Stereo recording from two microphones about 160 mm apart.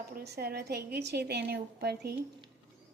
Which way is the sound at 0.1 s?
85° right.